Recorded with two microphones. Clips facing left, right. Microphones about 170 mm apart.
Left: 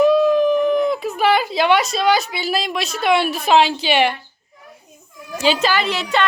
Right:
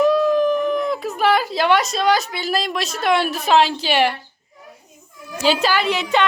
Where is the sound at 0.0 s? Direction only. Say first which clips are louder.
Left 2 dB; centre (ahead or behind).